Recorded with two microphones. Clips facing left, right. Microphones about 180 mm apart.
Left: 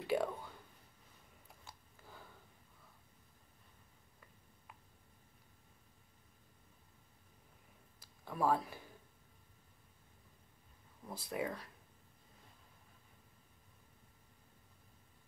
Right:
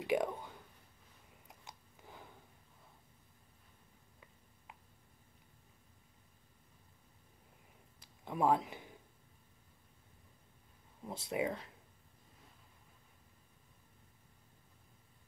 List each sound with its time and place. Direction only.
0.0 s speech: 15° right (ahead or behind)
1.5 s biting: 20° right (ahead or behind)
8.0 s a sound: 20° right (ahead or behind)
11.1 s speech: 20° right (ahead or behind)